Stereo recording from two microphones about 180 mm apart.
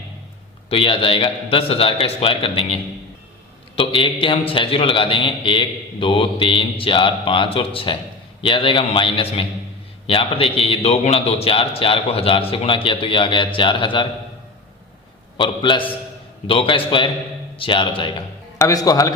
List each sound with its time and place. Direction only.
0.7 s a man's voice: 30° left (ahead or behind)
15.4 s a man's voice: 25° left (ahead or behind)